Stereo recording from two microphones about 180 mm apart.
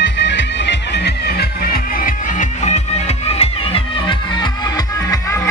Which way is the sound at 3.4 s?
30° left (ahead or behind).